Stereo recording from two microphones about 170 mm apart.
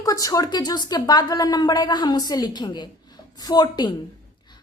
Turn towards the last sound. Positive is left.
turn(degrees=25)  # may be behind; listen again after turning